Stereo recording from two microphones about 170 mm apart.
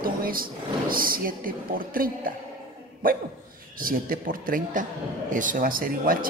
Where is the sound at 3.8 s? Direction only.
55° right (ahead or behind).